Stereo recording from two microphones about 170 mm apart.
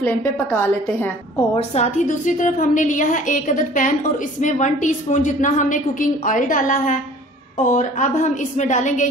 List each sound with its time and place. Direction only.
0.0 s a woman's voice: 10° left (ahead or behind)
1.7 s a woman's voice: 45° left (ahead or behind)